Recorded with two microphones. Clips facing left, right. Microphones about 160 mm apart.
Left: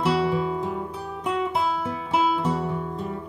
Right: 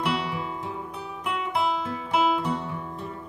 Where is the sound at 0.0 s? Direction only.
30° left (ahead or behind).